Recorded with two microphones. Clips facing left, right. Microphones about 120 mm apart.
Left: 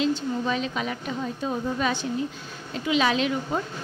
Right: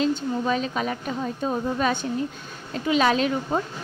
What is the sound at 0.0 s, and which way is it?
A woman's voice, 40° right (ahead or behind).